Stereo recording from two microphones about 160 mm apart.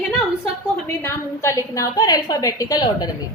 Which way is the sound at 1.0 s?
15° left (ahead or behind).